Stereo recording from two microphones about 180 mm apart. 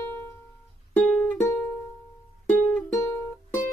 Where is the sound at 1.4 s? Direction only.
15° left (ahead or behind).